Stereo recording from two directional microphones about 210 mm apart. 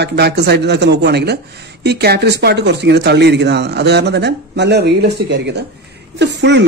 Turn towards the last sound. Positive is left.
turn(degrees=-55)  # may be behind; listen again after turning